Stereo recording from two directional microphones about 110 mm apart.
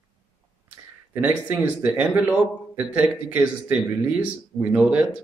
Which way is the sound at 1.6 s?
15° right (ahead or behind).